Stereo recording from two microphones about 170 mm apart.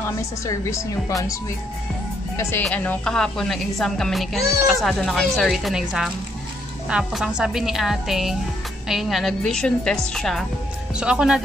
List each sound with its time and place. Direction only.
0.5 s speech: 20° left (ahead or behind)
2.6 s a woman's voice: 10° left (ahead or behind)